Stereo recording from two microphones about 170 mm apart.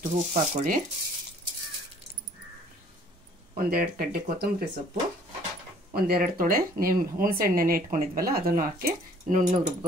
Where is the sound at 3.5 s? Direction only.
55° right (ahead or behind).